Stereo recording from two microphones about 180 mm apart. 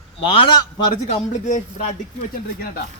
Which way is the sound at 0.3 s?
30° left (ahead or behind).